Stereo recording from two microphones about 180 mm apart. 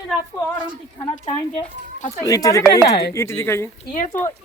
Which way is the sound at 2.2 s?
20° left (ahead or behind).